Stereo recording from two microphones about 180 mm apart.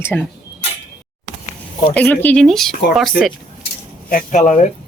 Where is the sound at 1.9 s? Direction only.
10° left (ahead or behind).